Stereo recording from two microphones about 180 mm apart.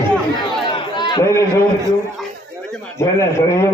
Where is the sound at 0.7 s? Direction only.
25° left (ahead or behind).